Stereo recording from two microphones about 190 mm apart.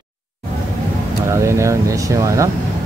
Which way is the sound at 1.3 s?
15° right (ahead or behind).